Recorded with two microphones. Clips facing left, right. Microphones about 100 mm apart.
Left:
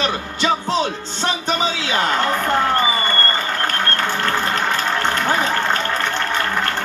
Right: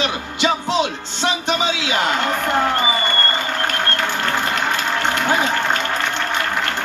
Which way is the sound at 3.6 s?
40° left (ahead or behind).